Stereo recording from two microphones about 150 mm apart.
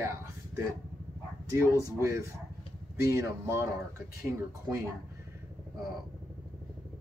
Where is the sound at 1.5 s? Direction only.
20° right (ahead or behind).